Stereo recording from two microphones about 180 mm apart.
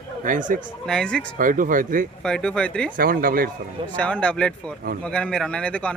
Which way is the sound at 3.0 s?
50° right (ahead or behind).